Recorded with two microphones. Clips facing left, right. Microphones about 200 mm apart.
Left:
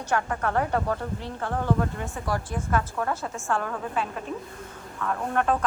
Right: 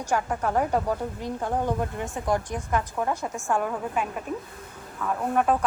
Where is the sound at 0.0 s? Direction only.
10° right (ahead or behind).